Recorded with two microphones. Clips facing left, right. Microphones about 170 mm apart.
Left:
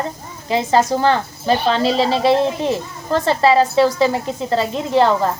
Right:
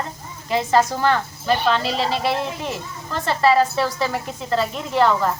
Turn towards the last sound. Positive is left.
turn(degrees=25)  # may be behind; listen again after turning